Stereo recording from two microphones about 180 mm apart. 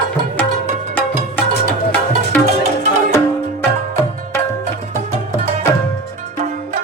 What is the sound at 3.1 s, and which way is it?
Music, 15° left (ahead or behind).